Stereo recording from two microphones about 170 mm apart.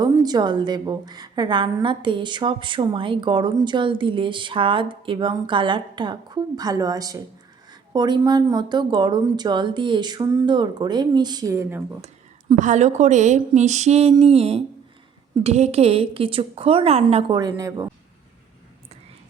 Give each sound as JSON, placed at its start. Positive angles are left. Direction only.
{"t": 0.0, "sound": "a woman's voice", "side_deg": -25}
{"t": 12.0, "sound": "a woman's voice", "side_deg": -45}
{"t": 17.3, "sound": "a woman's voice", "side_deg": -20}